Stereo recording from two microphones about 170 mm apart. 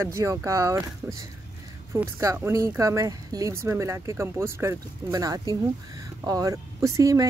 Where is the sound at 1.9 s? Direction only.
15° right (ahead or behind).